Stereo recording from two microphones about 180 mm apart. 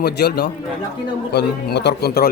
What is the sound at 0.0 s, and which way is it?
A man's voice, 65° left (ahead or behind).